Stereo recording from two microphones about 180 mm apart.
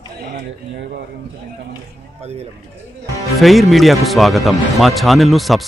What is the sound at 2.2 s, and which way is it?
Speech, 35° right (ahead or behind).